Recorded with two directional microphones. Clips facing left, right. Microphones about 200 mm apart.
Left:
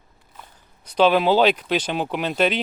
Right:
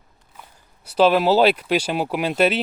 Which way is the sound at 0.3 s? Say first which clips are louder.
Even; 5° right (ahead or behind).